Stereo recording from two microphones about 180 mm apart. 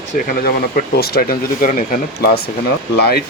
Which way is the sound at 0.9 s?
60° left (ahead or behind).